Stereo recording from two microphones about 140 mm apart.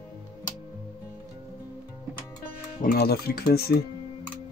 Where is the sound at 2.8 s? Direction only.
90° left.